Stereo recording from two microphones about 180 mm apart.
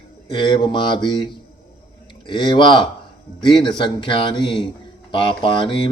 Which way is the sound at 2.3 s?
25° left (ahead or behind).